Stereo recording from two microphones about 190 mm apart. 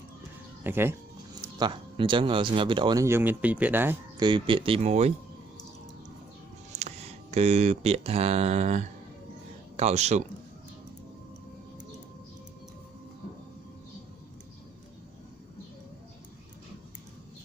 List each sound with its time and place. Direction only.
0.7 s speech: 10° right (ahead or behind)
1.6 s speech: 25° right (ahead or behind); by 4.0 s 10° right (ahead or behind)
4.2 s speech: 25° right (ahead or behind)
6.7 s speech: 35° right (ahead or behind)